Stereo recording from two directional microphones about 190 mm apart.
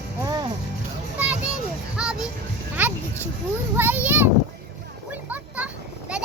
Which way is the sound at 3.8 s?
10° right (ahead or behind).